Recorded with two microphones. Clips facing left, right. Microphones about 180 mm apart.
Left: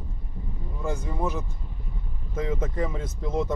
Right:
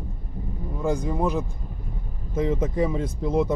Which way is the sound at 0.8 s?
15° right (ahead or behind).